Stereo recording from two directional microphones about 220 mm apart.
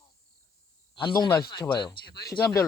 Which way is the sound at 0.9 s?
20° left (ahead or behind).